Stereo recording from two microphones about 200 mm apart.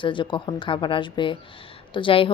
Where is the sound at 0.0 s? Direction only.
25° left (ahead or behind).